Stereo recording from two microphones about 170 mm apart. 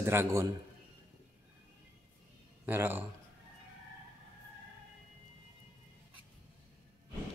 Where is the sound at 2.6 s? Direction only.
10° right (ahead or behind).